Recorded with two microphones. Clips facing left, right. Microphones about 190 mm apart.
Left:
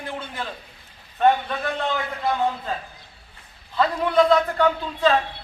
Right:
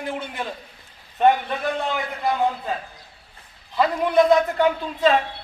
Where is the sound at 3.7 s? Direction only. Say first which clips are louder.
Right 1 dB; 20° right (ahead or behind).